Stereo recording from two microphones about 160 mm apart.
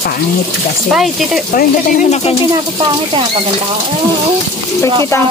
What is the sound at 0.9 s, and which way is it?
Speech, 5° right (ahead or behind).